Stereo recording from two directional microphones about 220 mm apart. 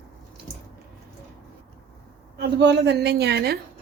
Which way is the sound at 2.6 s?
50° right (ahead or behind).